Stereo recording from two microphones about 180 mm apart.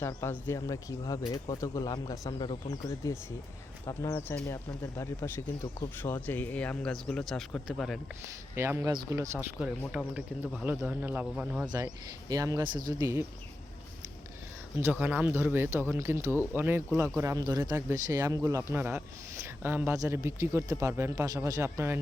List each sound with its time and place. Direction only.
0.0 s speech: 15° left (ahead or behind)
8.5 s speech: 15° right (ahead or behind)
9.6 s speech: 5° right (ahead or behind)
12.3 s speech: 20° right (ahead or behind)
14.8 s speech: 10° right (ahead or behind)